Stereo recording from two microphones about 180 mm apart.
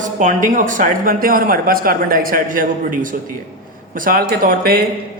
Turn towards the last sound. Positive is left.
turn(degrees=-55)  # may be behind; listen again after turning